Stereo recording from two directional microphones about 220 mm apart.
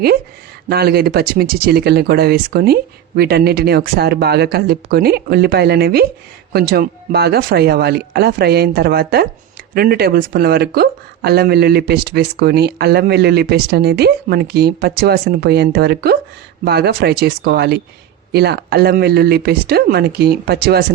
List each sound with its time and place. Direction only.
0.7 s speech: 45° right (ahead or behind)